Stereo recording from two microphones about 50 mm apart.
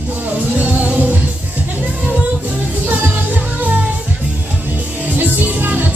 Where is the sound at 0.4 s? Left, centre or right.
Right.